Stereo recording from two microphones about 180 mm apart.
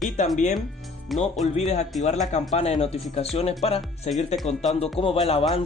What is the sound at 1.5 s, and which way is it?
Speech, 40° left (ahead or behind).